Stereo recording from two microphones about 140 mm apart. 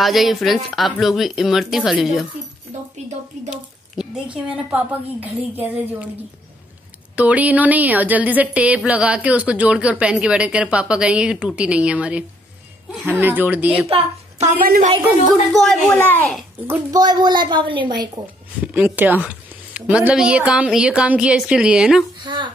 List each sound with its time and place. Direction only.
0.0 s speech: centre (ahead or behind)
3.4 s a sound: 5° right (ahead or behind)
5.2 s speech: 10° right (ahead or behind)
7.2 s speech: 10° right (ahead or behind)
13.8 s a woman's voice: 50° right (ahead or behind)
14.6 s a woman's voice: 90° right
15.5 s speech: centre (ahead or behind)
16.0 s a child's voice: 15° left (ahead or behind)
16.9 s a woman's voice: 30° right (ahead or behind)
18.7 s speech: 15° right (ahead or behind)
22.2 s speech: 35° right (ahead or behind)